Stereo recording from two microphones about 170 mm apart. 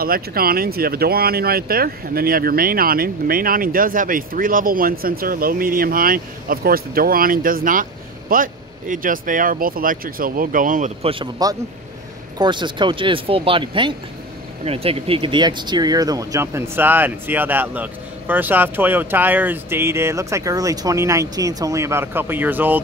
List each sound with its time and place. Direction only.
0.0 s speech: 60° right (ahead or behind)
11.1 s speech: 25° right (ahead or behind); by 22.8 s 10° right (ahead or behind)